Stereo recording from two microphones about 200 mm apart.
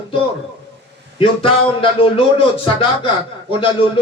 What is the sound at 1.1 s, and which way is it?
A man's voice, 25° left (ahead or behind).